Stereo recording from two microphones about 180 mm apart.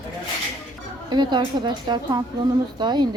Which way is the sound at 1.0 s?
25° right (ahead or behind).